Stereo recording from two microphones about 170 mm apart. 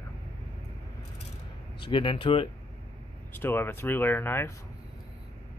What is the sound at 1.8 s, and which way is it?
Speech, 30° left (ahead or behind).